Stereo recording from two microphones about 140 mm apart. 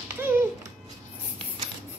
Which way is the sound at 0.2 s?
15° right (ahead or behind).